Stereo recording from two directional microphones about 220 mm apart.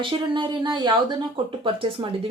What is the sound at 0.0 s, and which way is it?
Speech, 20° right (ahead or behind).